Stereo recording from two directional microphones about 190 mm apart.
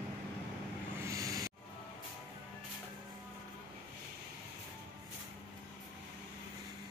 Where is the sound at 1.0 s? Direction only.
15° right (ahead or behind).